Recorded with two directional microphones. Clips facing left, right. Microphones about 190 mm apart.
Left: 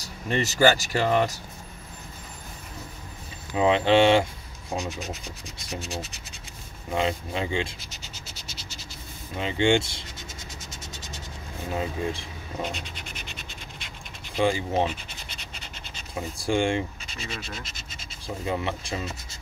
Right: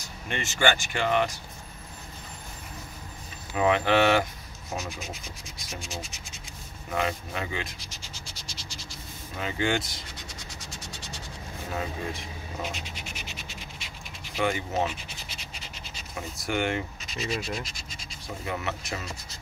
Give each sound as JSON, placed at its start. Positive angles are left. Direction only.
{"t": 0.0, "sound": "speech", "side_deg": 35}
{"t": 3.5, "sound": "speech", "side_deg": 25}
{"t": 5.1, "sound": "speech", "side_deg": 0}
{"t": 6.9, "sound": "speech", "side_deg": 25}
{"t": 9.4, "sound": "speech", "side_deg": 25}
{"t": 11.7, "sound": "speech", "side_deg": 30}
{"t": 12.6, "sound": "scratch", "side_deg": -5}
{"t": 14.4, "sound": "speech", "side_deg": 30}
{"t": 15.2, "sound": "scratch", "side_deg": 0}
{"t": 16.2, "sound": "speech", "side_deg": 30}
{"t": 18.2, "sound": "speech", "side_deg": 30}